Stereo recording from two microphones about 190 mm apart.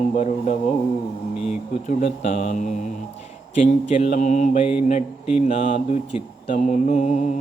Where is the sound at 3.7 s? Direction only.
40° left (ahead or behind).